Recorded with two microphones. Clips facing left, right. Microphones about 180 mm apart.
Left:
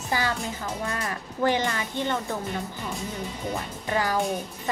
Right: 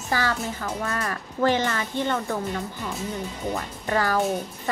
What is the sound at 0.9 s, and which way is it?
A woman's voice, 20° left (ahead or behind).